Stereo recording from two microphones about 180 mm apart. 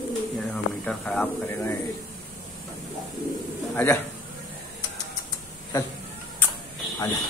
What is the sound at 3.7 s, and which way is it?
Speech, 15° left (ahead or behind).